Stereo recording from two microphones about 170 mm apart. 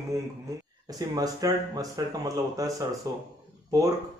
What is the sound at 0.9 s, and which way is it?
Speech, 20° right (ahead or behind).